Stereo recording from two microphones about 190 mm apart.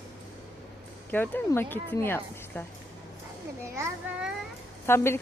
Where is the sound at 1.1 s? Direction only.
10° left (ahead or behind).